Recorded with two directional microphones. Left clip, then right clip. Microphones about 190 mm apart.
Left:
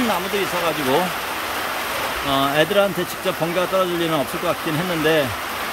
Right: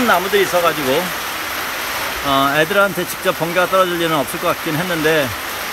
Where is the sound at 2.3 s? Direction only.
5° left (ahead or behind).